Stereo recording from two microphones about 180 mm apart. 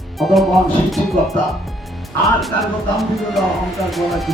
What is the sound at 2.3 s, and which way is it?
Speech, centre (ahead or behind).